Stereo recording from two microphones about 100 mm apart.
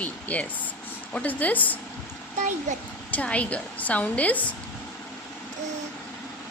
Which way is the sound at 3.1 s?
15° left (ahead or behind).